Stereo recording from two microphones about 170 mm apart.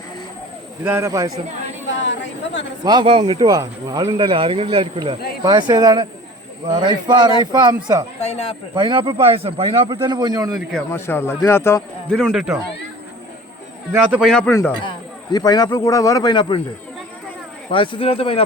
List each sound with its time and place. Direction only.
0.9 s speech: 15° right (ahead or behind)
2.0 s speech: 90° left
2.8 s speech: 25° right (ahead or behind)
8.2 s a man's voice: 40° left (ahead or behind)
8.7 s speech: 25° right (ahead or behind)
10.9 s speech: 15° left (ahead or behind)
12.1 s speech: centre (ahead or behind)
13.9 s a man's voice: 5° right (ahead or behind)
14.8 s speech: 25° left (ahead or behind)
17.7 s a man's voice: 30° left (ahead or behind)